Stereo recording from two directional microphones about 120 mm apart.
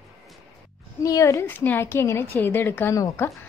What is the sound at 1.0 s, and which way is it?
A woman's voice, 25° left (ahead or behind).